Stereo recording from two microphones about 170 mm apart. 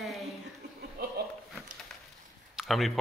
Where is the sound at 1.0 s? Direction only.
65° right (ahead or behind).